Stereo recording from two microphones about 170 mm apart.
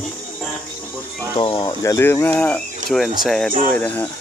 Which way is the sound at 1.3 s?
30° left (ahead or behind).